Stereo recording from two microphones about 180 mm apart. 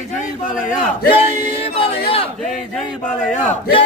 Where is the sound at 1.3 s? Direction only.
30° left (ahead or behind).